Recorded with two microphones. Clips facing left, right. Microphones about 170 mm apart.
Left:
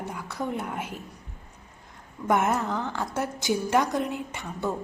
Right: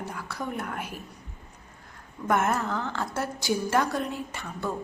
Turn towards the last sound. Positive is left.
turn(degrees=20)  # may be behind; listen again after turning